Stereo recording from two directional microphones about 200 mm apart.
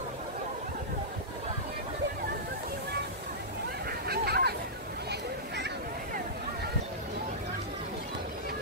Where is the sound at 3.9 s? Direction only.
50° right (ahead or behind).